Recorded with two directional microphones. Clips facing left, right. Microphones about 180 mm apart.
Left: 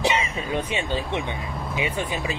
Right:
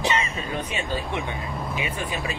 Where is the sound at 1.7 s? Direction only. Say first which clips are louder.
Left 5 dB; 30° left (ahead or behind).